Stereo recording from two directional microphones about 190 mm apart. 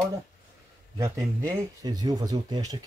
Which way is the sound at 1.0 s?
20° right (ahead or behind).